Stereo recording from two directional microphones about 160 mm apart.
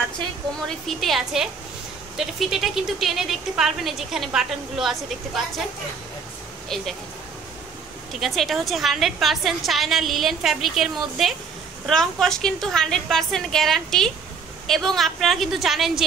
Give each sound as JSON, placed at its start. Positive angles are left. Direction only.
{"t": 0.7, "sound": "speech", "side_deg": 0}
{"t": 6.7, "sound": "speech", "side_deg": 0}
{"t": 8.2, "sound": "speech", "side_deg": 0}